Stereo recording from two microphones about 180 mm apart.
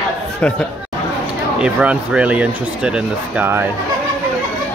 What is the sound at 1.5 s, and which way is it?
Speech, 5° right (ahead or behind).